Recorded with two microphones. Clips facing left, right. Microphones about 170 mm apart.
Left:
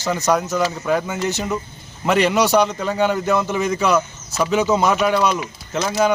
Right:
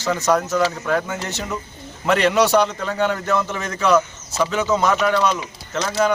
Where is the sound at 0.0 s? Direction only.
5° left (ahead or behind).